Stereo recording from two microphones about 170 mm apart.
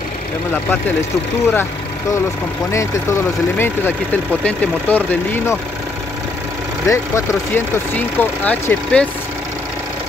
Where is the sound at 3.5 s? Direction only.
10° left (ahead or behind).